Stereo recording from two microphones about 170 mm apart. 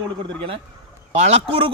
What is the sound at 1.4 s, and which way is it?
Speech, 30° right (ahead or behind).